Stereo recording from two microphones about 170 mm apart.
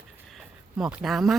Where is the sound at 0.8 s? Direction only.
Centre (ahead or behind).